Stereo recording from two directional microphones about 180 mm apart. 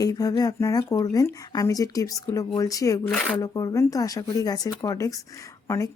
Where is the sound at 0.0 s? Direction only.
20° left (ahead or behind).